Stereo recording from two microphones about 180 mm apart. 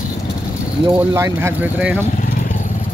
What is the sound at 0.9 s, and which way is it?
Speech, 15° right (ahead or behind).